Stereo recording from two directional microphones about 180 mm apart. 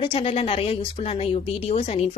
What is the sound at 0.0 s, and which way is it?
A woman's voice, 30° left (ahead or behind).